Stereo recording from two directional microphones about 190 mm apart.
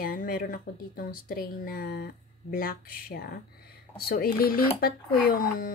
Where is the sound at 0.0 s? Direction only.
45° left (ahead or behind).